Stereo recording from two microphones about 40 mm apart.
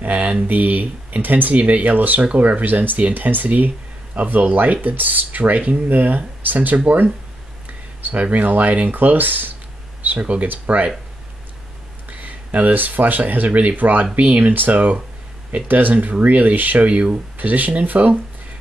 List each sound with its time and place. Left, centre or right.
0.0 s speech: right
8.0 s speech: right
8.9 s speech: right
10.0 s speech: right
12.1 s speech: right